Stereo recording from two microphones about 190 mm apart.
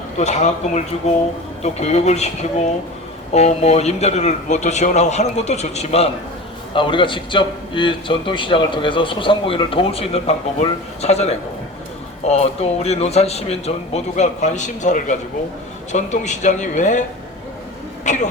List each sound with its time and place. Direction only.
0.2 s a man's voice: 35° left (ahead or behind)